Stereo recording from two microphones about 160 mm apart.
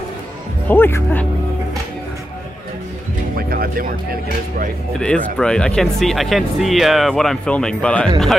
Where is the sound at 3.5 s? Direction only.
65° right (ahead or behind).